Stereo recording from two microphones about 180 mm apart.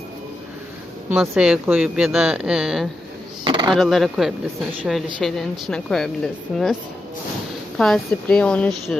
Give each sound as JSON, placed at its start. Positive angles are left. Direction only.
{"t": 1.2, "sound": "speech", "side_deg": 0}
{"t": 3.4, "sound": "a sound", "side_deg": -25}
{"t": 3.7, "sound": "speech", "side_deg": 0}
{"t": 7.8, "sound": "speech", "side_deg": 5}